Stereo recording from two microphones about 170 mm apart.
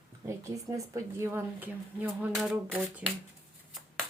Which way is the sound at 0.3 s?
20° right (ahead or behind).